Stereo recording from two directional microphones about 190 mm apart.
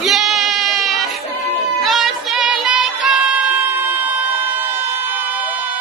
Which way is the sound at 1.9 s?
Centre (ahead or behind).